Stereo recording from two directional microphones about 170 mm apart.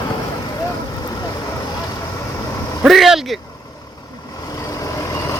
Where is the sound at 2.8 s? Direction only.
Centre (ahead or behind).